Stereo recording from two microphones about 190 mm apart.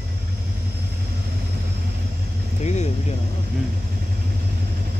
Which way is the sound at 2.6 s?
35° left (ahead or behind).